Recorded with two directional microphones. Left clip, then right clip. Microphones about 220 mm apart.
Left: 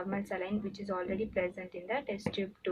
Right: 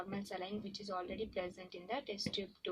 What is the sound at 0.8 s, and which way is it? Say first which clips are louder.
Speech: left 7 dB; 50° right (ahead or behind).